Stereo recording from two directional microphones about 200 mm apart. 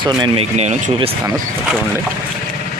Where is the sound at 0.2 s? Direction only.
30° right (ahead or behind).